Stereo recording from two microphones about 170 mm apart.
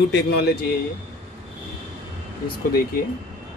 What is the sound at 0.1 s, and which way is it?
Speech, 80° left.